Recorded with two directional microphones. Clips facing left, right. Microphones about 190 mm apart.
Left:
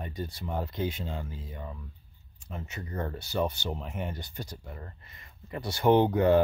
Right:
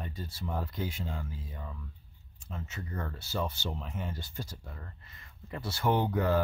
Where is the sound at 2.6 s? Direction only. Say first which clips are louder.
Left 4 dB; 20° left (ahead or behind).